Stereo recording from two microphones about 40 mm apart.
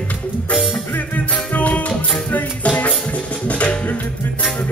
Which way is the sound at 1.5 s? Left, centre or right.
Left.